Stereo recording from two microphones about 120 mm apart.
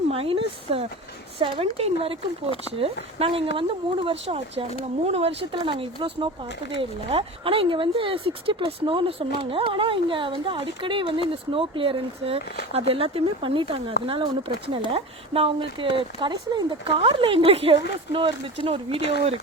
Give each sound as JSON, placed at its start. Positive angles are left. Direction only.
{"t": 0.1, "sound": "speech", "side_deg": -50}